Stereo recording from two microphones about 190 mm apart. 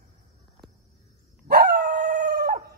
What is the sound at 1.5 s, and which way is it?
Dog, 55° right (ahead or behind).